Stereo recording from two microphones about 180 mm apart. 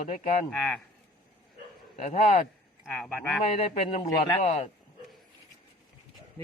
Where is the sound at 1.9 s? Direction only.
40° left (ahead or behind).